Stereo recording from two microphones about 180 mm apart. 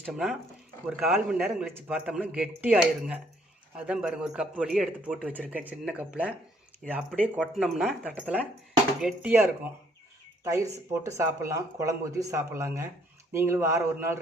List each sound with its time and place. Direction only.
0.0 s a man's voice: centre (ahead or behind)
10.4 s speech: 15° right (ahead or behind)